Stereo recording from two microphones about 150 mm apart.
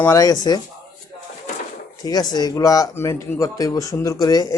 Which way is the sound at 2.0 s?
25° left (ahead or behind).